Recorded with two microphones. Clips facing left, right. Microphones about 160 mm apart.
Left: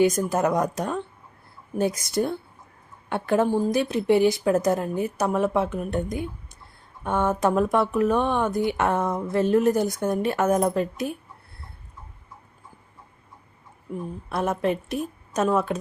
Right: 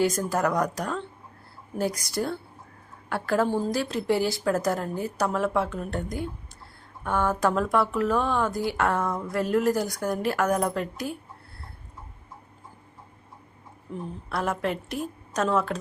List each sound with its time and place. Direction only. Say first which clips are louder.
0.0 s speech: left 3 dB; 20° left (ahead or behind)
14.3 s speech: left 3 dB; 20° left (ahead or behind)